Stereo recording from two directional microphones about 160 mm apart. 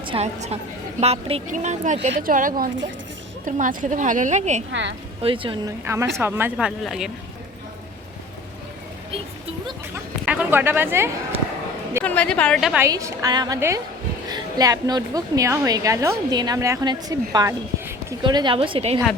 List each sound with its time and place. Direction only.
0.0 s a sound: 35° right (ahead or behind)
0.3 s speech: 45° right (ahead or behind)
5.2 s speech: 35° right (ahead or behind)
5.6 s a woman's voice: 20° right (ahead or behind); by 7.1 s centre (ahead or behind)
9.9 s speech: 10° right (ahead or behind)
11.3 s a sound: 35° right (ahead or behind)
12.0 s a woman's voice: 10° left (ahead or behind)
12.8 s a woman's voice: 20° right (ahead or behind); by 18.9 s 35° right (ahead or behind)